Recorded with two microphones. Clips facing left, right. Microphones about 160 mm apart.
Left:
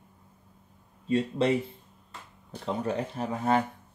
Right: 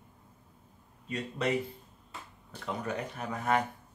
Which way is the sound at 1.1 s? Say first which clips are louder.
Left 7 dB; 30° left (ahead or behind).